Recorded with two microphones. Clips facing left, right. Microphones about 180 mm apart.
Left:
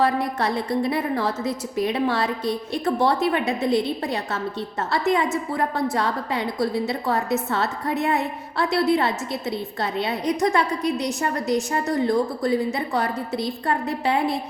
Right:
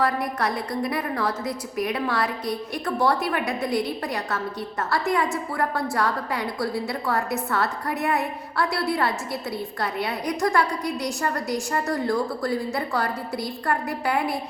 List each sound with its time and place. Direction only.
0.0 s a woman's voice: 25° left (ahead or behind)